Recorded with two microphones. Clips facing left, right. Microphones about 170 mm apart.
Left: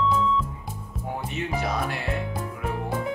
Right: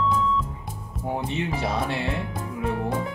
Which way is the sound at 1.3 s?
30° right (ahead or behind).